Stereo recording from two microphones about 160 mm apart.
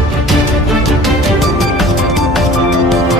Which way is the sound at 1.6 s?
Centre (ahead or behind).